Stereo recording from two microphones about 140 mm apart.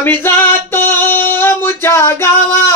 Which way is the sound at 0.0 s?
15° left (ahead or behind).